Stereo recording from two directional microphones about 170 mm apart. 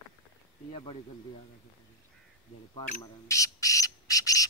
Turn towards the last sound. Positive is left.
turn(degrees=20)  # may be behind; listen again after turning